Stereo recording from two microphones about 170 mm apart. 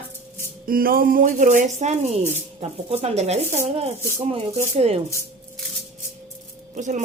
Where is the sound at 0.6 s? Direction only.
60° right (ahead or behind); by 5.0 s 35° right (ahead or behind).